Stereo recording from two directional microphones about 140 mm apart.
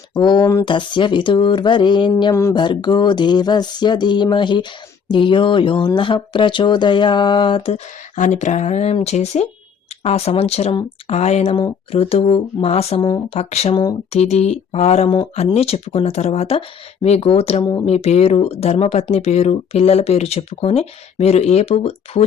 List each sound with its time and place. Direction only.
0.1 s speech: 30° left (ahead or behind)
13.0 s speech: 30° left (ahead or behind)
13.3 s speech: 50° left (ahead or behind)
17.6 s speech: 30° left (ahead or behind)
17.8 s speech: 50° left (ahead or behind)